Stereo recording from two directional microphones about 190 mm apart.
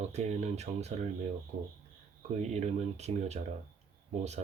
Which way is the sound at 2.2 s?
35° right (ahead or behind).